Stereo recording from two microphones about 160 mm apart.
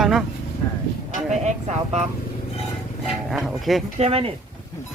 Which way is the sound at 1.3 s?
45° right (ahead or behind).